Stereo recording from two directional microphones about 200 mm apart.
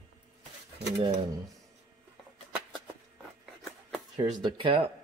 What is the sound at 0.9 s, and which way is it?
Speech, 30° right (ahead or behind).